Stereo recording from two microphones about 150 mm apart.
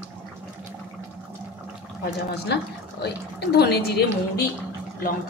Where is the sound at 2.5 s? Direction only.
90° left.